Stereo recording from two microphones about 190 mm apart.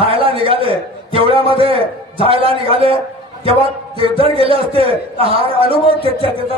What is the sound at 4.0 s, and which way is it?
A man's voice, 30° right (ahead or behind).